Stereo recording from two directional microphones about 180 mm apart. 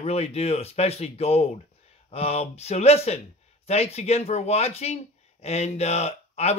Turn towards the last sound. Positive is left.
turn(degrees=35)  # may be behind; listen again after turning